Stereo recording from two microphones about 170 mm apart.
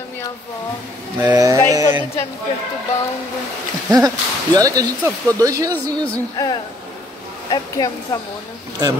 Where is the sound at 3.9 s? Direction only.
20° right (ahead or behind).